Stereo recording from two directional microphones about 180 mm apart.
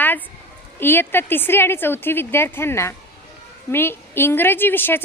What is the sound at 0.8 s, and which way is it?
A woman's voice, 10° left (ahead or behind).